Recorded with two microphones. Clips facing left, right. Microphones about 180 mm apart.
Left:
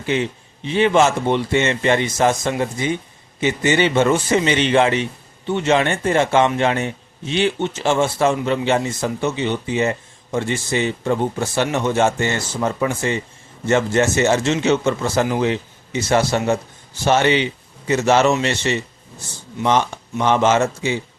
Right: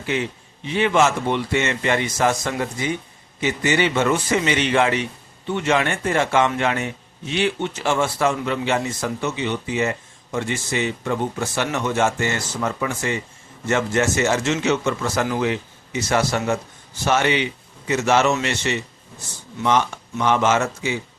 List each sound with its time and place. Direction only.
0.0 s a man's voice: 25° left (ahead or behind)